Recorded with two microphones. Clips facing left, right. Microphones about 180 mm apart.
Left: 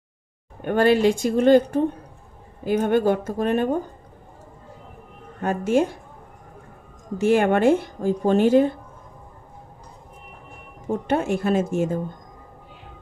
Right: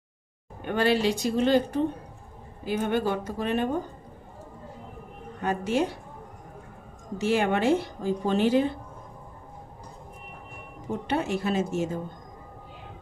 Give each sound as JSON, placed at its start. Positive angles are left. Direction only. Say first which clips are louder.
{"t": 0.7, "sound": "speech", "louder": "left 6 dB", "side_deg": 50}
{"t": 5.4, "sound": "speech", "louder": "left 5 dB", "side_deg": 50}
{"t": 7.2, "sound": "speech", "louder": "left 6 dB", "side_deg": 50}
{"t": 10.9, "sound": "speech", "louder": "left 5 dB", "side_deg": 50}